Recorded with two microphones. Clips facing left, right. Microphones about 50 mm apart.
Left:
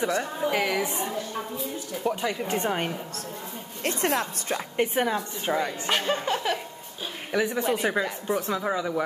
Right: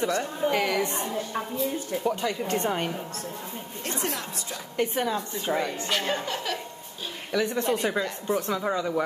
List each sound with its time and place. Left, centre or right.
0.5 s speech: centre
4.0 s speech: left
4.7 s speech: left
7.3 s speech: centre